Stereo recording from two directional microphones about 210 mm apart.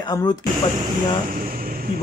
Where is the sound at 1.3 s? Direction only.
45° right (ahead or behind).